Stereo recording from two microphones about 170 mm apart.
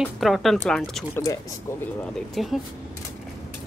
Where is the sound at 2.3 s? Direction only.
Centre (ahead or behind).